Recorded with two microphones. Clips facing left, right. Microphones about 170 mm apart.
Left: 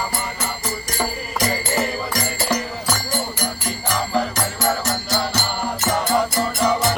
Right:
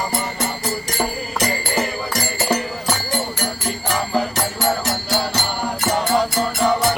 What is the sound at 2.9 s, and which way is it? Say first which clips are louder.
Music: right 1 dB; 10° right (ahead or behind).